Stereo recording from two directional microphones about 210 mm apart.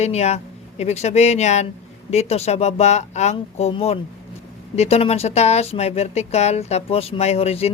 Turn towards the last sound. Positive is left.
turn(degrees=30)  # may be behind; listen again after turning